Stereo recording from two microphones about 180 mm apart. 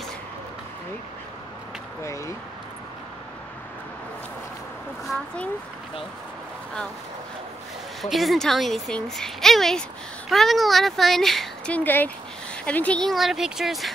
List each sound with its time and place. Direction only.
2.0 s speech: 15° left (ahead or behind)
5.0 s a woman's voice: 5° left (ahead or behind)
8.0 s a woman's voice: centre (ahead or behind)